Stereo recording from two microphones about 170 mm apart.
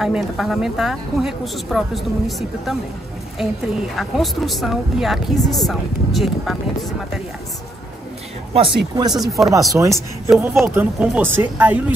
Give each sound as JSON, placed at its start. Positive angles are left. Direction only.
{"t": 0.0, "sound": "a woman's voice", "side_deg": 0}
{"t": 3.9, "sound": "a woman's voice", "side_deg": 0}
{"t": 8.5, "sound": "speech", "side_deg": -30}
{"t": 9.1, "sound": "a woman's voice", "side_deg": 0}
{"t": 9.7, "sound": "speech", "side_deg": -15}